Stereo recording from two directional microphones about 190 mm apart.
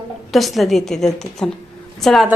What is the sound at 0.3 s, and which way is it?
A woman's voice, centre (ahead or behind).